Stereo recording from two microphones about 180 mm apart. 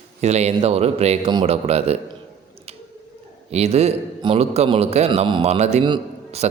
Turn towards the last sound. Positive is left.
turn(degrees=-35)  # may be behind; listen again after turning